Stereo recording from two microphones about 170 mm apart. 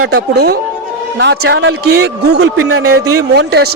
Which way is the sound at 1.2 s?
90° right.